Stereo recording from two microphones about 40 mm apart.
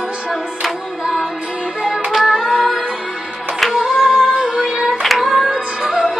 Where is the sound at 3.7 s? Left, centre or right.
Centre.